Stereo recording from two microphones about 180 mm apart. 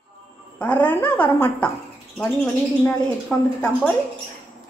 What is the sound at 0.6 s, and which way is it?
Speech, 10° left (ahead or behind).